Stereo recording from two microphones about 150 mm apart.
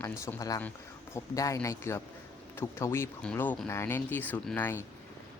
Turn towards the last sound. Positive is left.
turn(degrees=15)  # may be behind; listen again after turning